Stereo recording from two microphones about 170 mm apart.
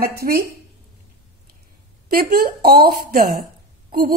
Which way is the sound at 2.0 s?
60° right (ahead or behind).